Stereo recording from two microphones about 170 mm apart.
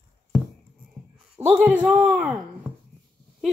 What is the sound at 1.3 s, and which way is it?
Speech, 10° right (ahead or behind).